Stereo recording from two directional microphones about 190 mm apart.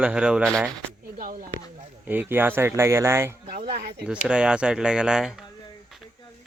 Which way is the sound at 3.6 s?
55° right (ahead or behind).